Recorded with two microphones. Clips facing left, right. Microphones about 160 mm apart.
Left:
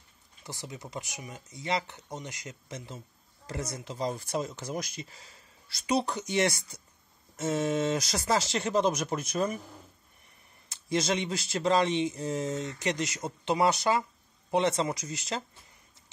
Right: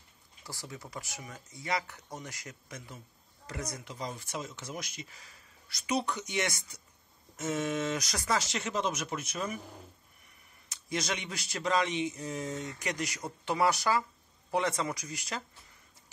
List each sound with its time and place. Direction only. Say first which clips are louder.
0.4 s speech: left 3 dB; 20° left (ahead or behind); by 9.6 s 35° left (ahead or behind)
10.7 s speech: left 6 dB; 30° left (ahead or behind)